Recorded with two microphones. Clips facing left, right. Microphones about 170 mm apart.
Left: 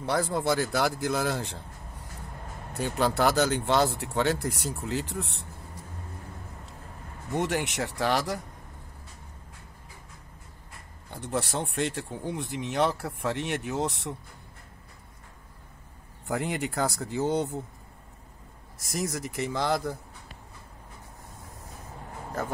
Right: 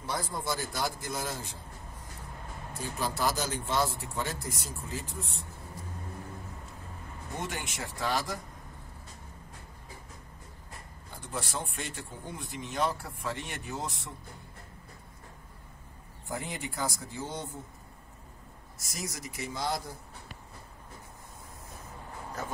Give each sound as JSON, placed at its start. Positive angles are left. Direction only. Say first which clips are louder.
{"t": 0.0, "sound": "speech", "louder": "left 8 dB", "side_deg": 70}
{"t": 2.7, "sound": "speech", "louder": "left 8 dB", "side_deg": 65}
{"t": 7.3, "sound": "speech", "louder": "left 10 dB", "side_deg": 70}
{"t": 11.1, "sound": "speech", "louder": "left 7 dB", "side_deg": 65}
{"t": 16.3, "sound": "speech", "louder": "left 7 dB", "side_deg": 70}
{"t": 19.1, "sound": "speech", "louder": "left 8 dB", "side_deg": 65}